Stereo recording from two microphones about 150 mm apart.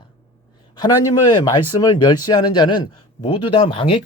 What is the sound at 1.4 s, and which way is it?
A man's voice, 30° left (ahead or behind).